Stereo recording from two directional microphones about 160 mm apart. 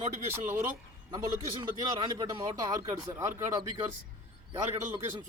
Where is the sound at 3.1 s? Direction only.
20° right (ahead or behind).